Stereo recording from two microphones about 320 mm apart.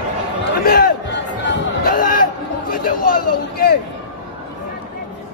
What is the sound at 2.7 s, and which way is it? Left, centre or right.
Speech, left.